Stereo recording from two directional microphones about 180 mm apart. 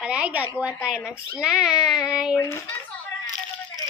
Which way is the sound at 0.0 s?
5° right (ahead or behind).